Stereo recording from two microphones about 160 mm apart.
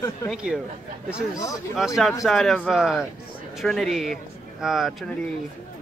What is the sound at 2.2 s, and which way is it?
Speech, centre (ahead or behind).